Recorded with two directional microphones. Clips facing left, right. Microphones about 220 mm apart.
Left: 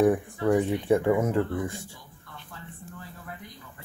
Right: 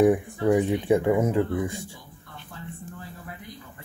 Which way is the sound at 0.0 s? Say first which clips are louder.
Right 2 dB; 15° right (ahead or behind).